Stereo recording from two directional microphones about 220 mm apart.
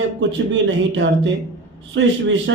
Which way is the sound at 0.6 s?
60° right (ahead or behind).